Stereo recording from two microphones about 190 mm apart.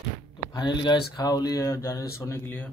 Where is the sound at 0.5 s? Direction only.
20° left (ahead or behind).